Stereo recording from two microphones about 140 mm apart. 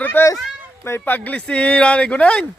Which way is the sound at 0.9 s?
15° left (ahead or behind).